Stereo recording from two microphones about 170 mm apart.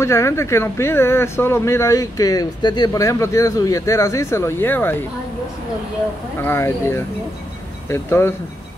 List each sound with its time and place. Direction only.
0.0 s speech: 15° left (ahead or behind)
6.4 s speech: 15° left (ahead or behind)